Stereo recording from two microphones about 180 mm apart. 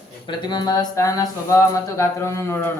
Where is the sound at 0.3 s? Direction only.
25° left (ahead or behind).